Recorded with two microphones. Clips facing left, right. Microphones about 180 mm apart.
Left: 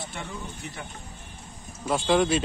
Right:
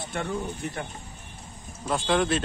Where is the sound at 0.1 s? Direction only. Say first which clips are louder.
Right 10 dB; 55° right (ahead or behind).